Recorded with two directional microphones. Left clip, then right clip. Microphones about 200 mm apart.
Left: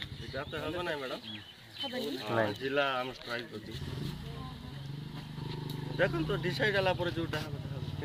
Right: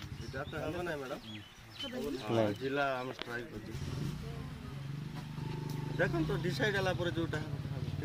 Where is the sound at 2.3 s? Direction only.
25° right (ahead or behind).